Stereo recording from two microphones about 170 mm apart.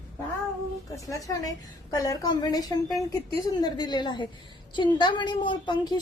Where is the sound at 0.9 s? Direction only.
20° left (ahead or behind).